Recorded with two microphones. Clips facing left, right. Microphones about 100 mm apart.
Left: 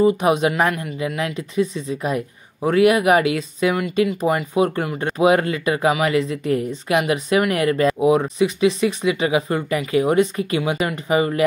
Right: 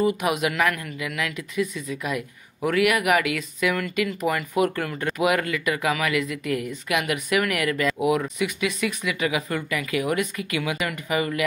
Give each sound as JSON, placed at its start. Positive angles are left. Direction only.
{"t": 0.0, "sound": "speech", "side_deg": 30}